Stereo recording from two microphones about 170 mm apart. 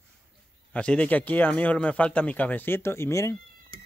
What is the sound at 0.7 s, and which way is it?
Speech, 5° left (ahead or behind).